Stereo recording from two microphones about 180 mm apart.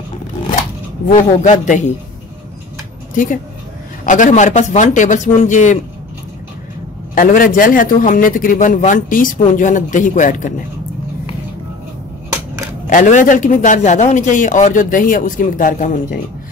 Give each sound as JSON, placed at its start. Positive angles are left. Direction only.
{"t": 1.1, "sound": "a man's voice", "side_deg": 40}
{"t": 4.0, "sound": "a man's voice", "side_deg": 45}
{"t": 7.2, "sound": "a man's voice", "side_deg": 50}
{"t": 12.8, "sound": "a man's voice", "side_deg": 45}